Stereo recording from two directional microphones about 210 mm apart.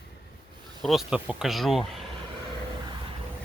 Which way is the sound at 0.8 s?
Centre (ahead or behind).